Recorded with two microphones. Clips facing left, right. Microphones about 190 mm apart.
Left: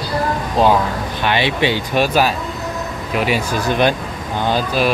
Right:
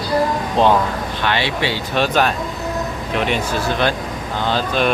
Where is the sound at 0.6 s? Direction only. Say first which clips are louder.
Left 1 dB; 5° left (ahead or behind).